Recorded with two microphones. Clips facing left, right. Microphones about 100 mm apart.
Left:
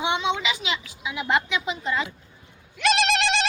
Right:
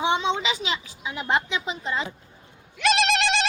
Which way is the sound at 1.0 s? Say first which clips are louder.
Left 1 dB; 35° right (ahead or behind).